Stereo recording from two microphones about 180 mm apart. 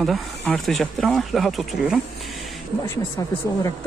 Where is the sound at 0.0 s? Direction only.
Centre (ahead or behind).